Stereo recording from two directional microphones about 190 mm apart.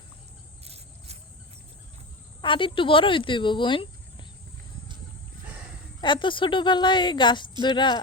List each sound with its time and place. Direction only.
0.6 s a sound: 35° right (ahead or behind)
2.4 s speech: 25° left (ahead or behind)
6.0 s a woman's voice: 25° left (ahead or behind)